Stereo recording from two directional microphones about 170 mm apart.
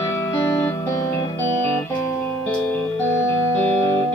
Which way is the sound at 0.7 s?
15° left (ahead or behind).